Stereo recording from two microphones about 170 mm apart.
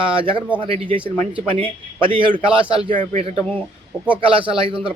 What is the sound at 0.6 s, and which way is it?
A man's voice, 30° right (ahead or behind).